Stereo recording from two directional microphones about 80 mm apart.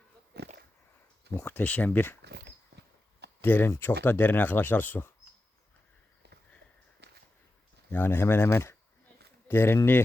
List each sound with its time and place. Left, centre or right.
1.5 s speech: left
3.4 s speech: left
7.9 s speech: left